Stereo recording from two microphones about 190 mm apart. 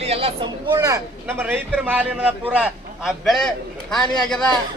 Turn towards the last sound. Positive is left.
turn(degrees=5)  # may be behind; listen again after turning